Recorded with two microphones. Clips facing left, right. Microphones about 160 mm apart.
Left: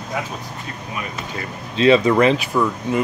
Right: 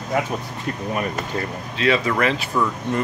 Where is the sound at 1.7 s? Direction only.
25° left (ahead or behind).